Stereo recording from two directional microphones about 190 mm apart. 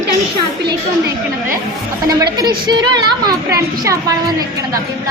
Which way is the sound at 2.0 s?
20° right (ahead or behind).